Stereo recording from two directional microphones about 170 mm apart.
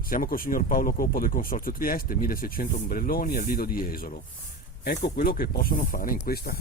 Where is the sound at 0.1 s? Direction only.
60° left (ahead or behind).